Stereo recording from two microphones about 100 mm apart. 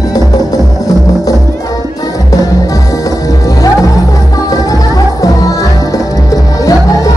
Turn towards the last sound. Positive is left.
turn(degrees=35)  # may be behind; listen again after turning